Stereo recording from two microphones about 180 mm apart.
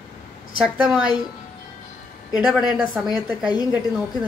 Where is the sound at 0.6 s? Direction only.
5° right (ahead or behind).